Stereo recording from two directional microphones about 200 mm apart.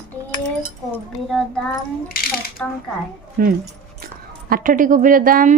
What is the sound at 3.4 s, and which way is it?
A woman's voice, 50° right (ahead or behind).